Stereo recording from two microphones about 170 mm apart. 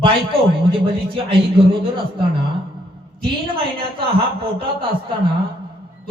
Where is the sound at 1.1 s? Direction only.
30° right (ahead or behind).